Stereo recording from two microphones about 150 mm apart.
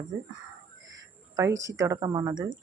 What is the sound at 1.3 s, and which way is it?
A woman's voice, 20° right (ahead or behind).